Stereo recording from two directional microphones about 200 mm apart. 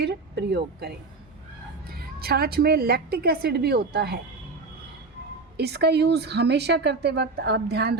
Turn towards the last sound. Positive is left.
turn(degrees=-55)  # may be behind; listen again after turning